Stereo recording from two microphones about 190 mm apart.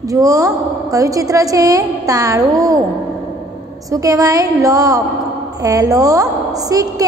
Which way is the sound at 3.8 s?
20° right (ahead or behind).